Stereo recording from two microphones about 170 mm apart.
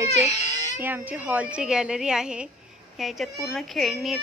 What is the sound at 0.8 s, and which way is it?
A woman's voice, 10° right (ahead or behind).